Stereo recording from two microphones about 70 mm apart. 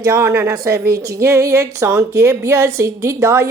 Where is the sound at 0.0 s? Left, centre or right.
Right.